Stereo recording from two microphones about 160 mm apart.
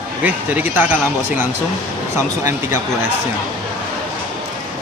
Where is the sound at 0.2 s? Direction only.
10° right (ahead or behind).